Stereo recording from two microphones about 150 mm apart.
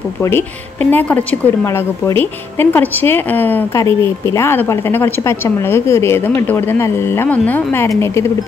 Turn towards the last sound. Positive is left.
turn(degrees=15)  # may be behind; listen again after turning